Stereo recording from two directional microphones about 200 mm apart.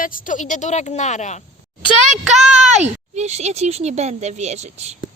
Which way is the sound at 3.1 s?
35° right (ahead or behind).